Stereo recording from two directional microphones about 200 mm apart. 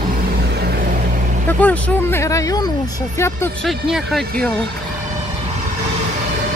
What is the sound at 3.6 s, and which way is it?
Speech, centre (ahead or behind).